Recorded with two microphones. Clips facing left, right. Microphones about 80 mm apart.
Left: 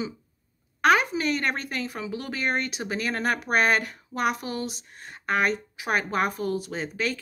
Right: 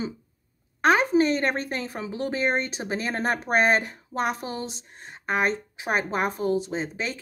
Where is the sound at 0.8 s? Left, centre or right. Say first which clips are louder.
Right 2 dB; right.